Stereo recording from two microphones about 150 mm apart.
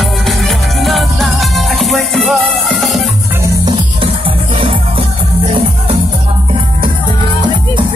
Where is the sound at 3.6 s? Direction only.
35° right (ahead or behind).